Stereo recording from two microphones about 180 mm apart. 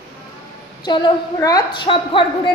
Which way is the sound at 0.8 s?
25° left (ahead or behind).